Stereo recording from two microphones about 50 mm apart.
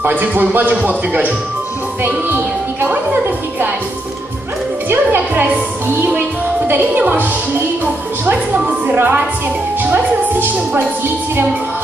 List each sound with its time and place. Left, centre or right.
0.0 s speech: right
4.8 s a woman's voice: right
8.5 s music: right
8.9 s speech: right